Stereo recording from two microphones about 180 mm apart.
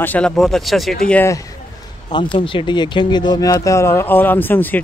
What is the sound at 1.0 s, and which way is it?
Speech, 10° left (ahead or behind).